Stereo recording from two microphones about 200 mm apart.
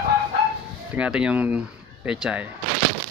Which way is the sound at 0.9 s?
5° right (ahead or behind).